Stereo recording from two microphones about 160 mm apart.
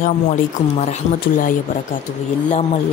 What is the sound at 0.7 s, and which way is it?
Speech, 45° left (ahead or behind).